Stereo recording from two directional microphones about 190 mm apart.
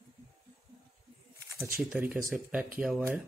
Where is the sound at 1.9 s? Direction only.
5° right (ahead or behind).